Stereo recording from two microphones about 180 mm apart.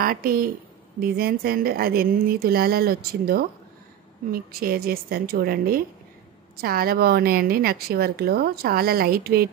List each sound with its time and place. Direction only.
0.0 s a woman's voice: 55° right (ahead or behind)